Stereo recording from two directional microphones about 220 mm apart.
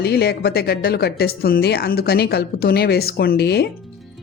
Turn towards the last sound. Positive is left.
turn(degrees=45)  # may be behind; listen again after turning